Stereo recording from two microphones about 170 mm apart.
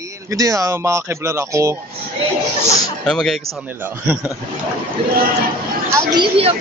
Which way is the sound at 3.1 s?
5° left (ahead or behind).